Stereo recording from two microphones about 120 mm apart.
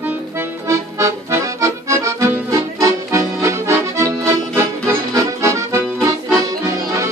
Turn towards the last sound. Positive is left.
turn(degrees=-25)  # may be behind; listen again after turning